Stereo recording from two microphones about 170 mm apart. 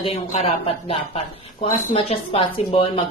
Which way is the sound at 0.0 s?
35° left (ahead or behind).